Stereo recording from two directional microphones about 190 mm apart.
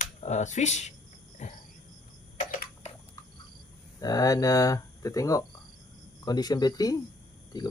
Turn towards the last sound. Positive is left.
turn(degrees=20)  # may be behind; listen again after turning